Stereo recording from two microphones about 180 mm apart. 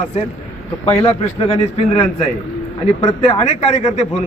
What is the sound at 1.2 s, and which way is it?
Speech, 35° left (ahead or behind).